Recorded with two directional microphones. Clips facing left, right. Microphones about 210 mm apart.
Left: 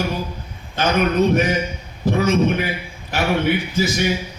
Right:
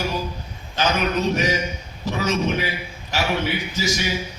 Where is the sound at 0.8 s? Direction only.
55° left (ahead or behind).